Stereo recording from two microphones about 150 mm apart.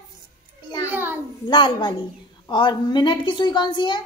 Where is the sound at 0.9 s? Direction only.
10° right (ahead or behind).